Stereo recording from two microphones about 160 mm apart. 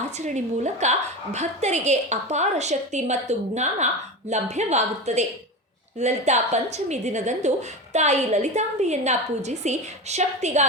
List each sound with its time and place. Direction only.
0.0 s a woman's voice: 45° right (ahead or behind)